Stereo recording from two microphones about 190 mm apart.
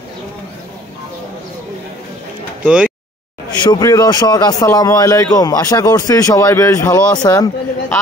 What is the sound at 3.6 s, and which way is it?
A man's voice, 20° left (ahead or behind).